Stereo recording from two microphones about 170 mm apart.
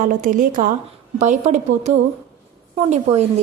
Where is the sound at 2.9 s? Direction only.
40° right (ahead or behind).